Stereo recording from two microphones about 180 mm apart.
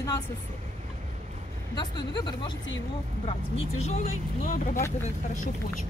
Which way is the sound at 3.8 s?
40° left (ahead or behind).